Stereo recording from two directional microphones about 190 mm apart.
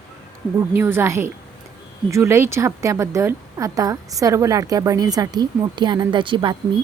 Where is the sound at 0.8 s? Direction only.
10° right (ahead or behind).